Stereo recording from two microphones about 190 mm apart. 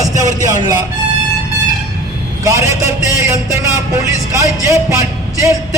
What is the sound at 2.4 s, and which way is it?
Speech, 15° right (ahead or behind).